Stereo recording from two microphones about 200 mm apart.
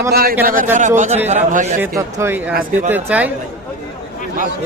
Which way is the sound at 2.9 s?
5° right (ahead or behind).